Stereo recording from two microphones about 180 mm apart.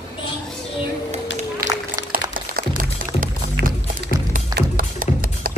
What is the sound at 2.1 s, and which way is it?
Music, 50° right (ahead or behind).